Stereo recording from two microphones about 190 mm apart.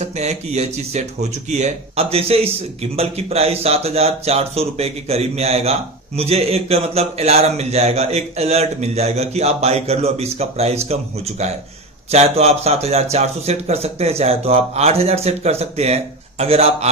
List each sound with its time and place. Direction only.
0.0 s speech: 35° right (ahead or behind)